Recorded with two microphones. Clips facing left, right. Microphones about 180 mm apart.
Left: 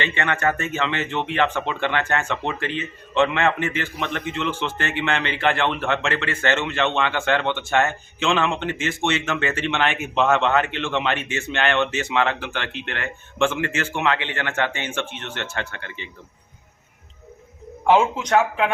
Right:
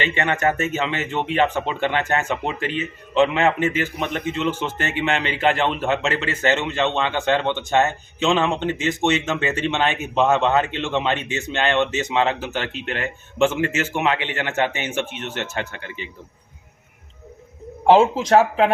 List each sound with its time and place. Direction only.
0.0 s speech: 20° right (ahead or behind)
17.8 s speech: 30° right (ahead or behind)